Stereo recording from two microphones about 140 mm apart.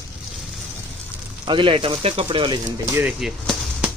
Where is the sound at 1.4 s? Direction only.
35° right (ahead or behind).